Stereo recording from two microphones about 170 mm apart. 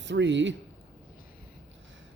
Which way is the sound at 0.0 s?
90° right.